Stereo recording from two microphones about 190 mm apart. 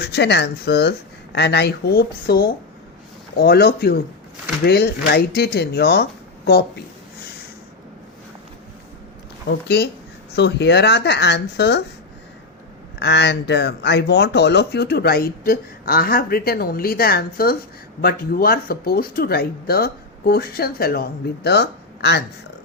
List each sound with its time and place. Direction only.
0.0 s speech: 60° left (ahead or behind)
9.6 s speech: 60° left (ahead or behind)
13.0 s speech: 65° left (ahead or behind)